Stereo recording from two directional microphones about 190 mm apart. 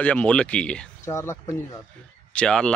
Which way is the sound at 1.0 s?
15° left (ahead or behind).